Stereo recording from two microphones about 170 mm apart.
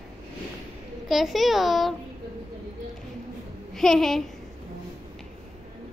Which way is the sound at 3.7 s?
Centre (ahead or behind).